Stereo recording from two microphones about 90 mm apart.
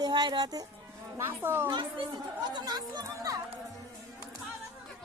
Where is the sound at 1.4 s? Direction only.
25° right (ahead or behind).